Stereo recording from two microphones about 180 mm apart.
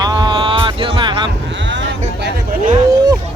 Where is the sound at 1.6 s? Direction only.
90° right.